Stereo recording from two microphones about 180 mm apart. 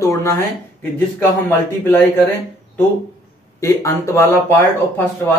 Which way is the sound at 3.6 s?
15° left (ahead or behind).